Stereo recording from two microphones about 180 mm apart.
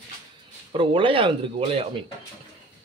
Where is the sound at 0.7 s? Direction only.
30° right (ahead or behind).